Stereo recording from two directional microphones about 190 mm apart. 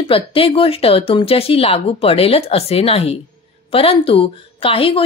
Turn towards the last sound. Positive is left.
turn(degrees=30)  # may be behind; listen again after turning